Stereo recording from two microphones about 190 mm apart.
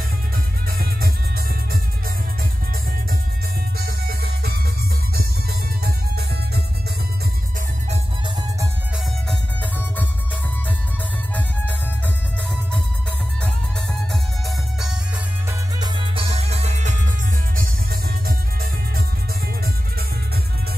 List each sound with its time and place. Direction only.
0.7 s music: 50° right (ahead or behind)
3.7 s music: 55° right (ahead or behind)
9.3 s music: 10° left (ahead or behind)
15.8 s music: 25° right (ahead or behind)
18.2 s music: 50° right (ahead or behind)